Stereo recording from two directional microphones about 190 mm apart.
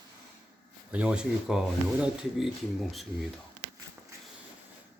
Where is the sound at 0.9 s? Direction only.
5° right (ahead or behind).